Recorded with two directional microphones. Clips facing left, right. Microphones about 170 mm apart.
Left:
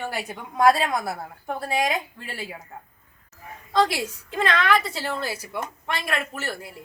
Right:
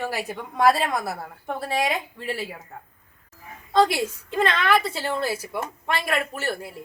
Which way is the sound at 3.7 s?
Centre (ahead or behind).